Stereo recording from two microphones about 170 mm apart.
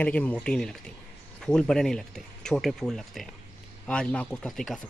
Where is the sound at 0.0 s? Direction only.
10° left (ahead or behind).